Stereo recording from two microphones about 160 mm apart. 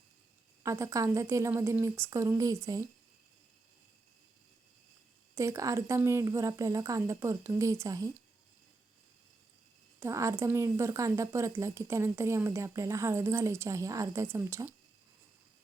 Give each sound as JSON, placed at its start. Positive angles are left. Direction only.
{"t": 0.6, "sound": "speech", "side_deg": -20}
{"t": 5.3, "sound": "speech", "side_deg": -20}
{"t": 10.0, "sound": "a woman's voice", "side_deg": -20}